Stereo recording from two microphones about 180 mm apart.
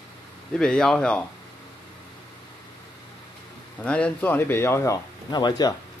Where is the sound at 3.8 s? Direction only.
5° left (ahead or behind).